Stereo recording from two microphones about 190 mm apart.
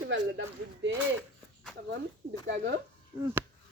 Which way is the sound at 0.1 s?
75° right (ahead or behind).